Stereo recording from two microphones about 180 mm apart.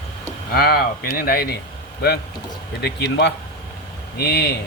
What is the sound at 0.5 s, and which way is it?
Speech, 55° left (ahead or behind).